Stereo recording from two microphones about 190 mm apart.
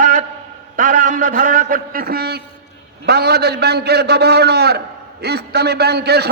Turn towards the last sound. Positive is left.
turn(degrees=-60)  # may be behind; listen again after turning